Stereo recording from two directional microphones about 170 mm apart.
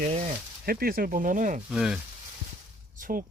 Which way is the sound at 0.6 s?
60° right (ahead or behind).